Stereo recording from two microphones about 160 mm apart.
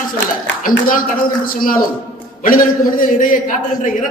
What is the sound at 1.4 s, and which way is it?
A man's voice, 60° left (ahead or behind).